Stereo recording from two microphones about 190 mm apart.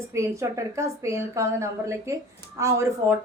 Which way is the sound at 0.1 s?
15° right (ahead or behind).